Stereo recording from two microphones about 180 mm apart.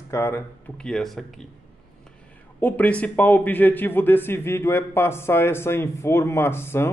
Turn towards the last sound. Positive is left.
turn(degrees=15)  # may be behind; listen again after turning